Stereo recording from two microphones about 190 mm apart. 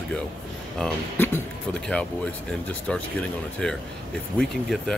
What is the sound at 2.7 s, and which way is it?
Speech, 5° left (ahead or behind).